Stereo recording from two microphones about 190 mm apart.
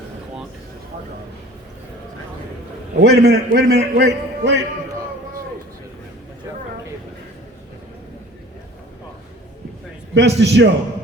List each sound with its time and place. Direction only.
3.0 s a man's voice: 60° right (ahead or behind)
10.2 s a man's voice: 65° right (ahead or behind)